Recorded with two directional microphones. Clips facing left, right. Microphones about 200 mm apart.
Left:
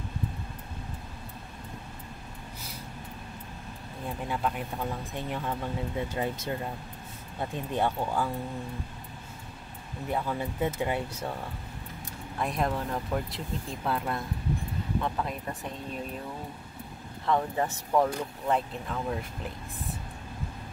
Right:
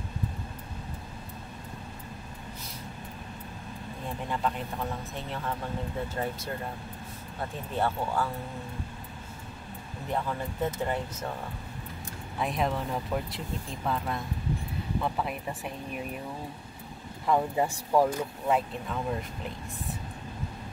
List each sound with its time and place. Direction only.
4.3 s speech: 5° left (ahead or behind)
7.7 s speech: 15° left (ahead or behind)
10.1 s speech: 5° left (ahead or behind)
12.4 s speech: centre (ahead or behind)
17.3 s speech: 10° right (ahead or behind)